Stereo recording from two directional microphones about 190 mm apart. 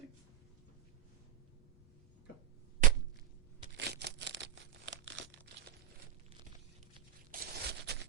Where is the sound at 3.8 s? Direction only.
60° right (ahead or behind).